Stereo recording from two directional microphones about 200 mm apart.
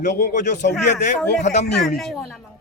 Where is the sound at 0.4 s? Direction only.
35° left (ahead or behind).